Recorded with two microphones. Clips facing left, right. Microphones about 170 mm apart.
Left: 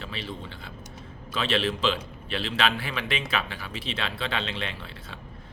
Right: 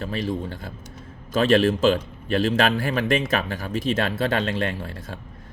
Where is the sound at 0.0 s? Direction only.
45° right (ahead or behind).